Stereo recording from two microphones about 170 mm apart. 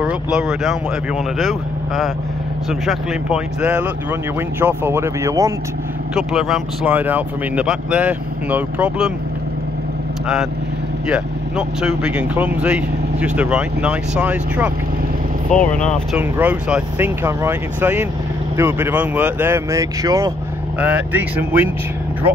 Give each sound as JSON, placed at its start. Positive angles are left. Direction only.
{"t": 0.0, "sound": "speech", "side_deg": -5}
{"t": 6.1, "sound": "speech", "side_deg": -5}
{"t": 10.2, "sound": "speech", "side_deg": -5}
{"t": 15.5, "sound": "speech", "side_deg": 45}
{"t": 16.2, "sound": "speech", "side_deg": -10}